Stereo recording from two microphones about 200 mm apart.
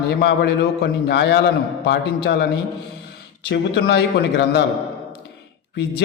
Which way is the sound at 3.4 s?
55° left (ahead or behind).